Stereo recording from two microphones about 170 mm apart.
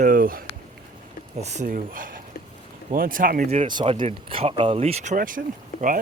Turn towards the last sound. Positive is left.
turn(degrees=65)  # may be behind; listen again after turning